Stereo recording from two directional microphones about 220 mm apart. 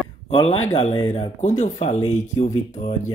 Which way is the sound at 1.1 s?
30° left (ahead or behind).